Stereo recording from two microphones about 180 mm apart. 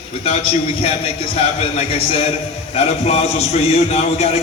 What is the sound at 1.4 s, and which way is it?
A man's voice, 35° left (ahead or behind).